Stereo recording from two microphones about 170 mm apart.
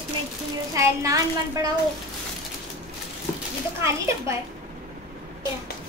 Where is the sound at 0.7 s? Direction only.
20° right (ahead or behind).